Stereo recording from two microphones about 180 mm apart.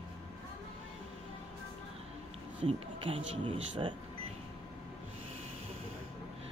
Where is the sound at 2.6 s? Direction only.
30° right (ahead or behind).